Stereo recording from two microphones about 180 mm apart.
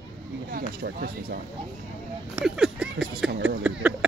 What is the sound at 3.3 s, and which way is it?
Speech, 85° right.